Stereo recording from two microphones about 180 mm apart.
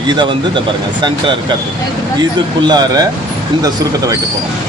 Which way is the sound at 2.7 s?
20° right (ahead or behind).